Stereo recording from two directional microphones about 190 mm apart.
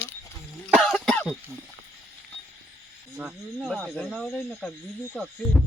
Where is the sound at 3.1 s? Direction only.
Centre (ahead or behind).